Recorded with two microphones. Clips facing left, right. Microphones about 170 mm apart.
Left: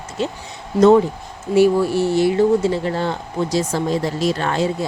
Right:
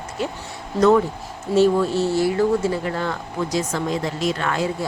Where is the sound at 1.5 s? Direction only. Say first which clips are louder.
Left 2 dB; 10° left (ahead or behind).